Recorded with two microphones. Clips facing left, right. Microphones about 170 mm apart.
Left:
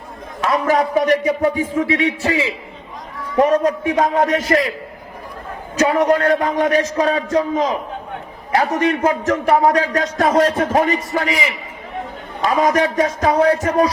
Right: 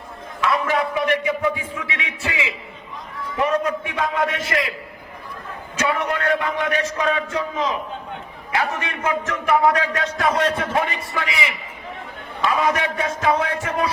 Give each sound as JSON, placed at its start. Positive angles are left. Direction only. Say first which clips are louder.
{"t": 0.4, "sound": "a man's voice", "louder": "left 4 dB", "side_deg": 40}
{"t": 5.7, "sound": "a man's voice", "louder": "left 8 dB", "side_deg": 40}